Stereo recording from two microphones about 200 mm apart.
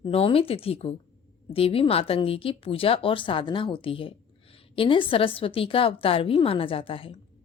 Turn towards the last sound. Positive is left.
turn(degrees=25)  # may be behind; listen again after turning